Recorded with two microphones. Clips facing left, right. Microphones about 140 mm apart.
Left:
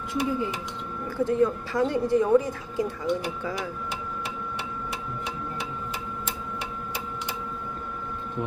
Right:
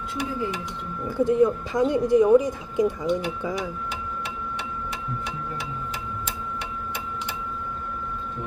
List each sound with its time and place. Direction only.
1.1 s a woman's voice: 15° right (ahead or behind)